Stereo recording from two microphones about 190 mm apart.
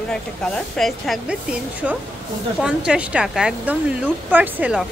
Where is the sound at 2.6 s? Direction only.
5° right (ahead or behind).